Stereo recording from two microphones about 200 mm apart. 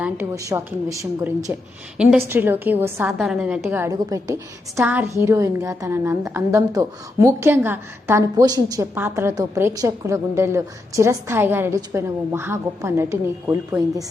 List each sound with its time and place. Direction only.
0.0 s a woman's voice: 10° right (ahead or behind)
2.0 s a woman's voice: 5° right (ahead or behind)